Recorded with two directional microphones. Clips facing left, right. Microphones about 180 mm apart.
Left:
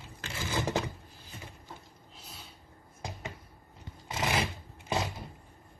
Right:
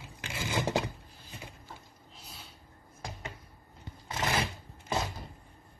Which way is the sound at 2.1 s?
Centre (ahead or behind).